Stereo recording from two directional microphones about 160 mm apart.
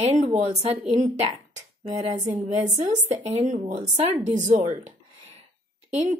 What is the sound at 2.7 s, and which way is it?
Speech, 50° right (ahead or behind).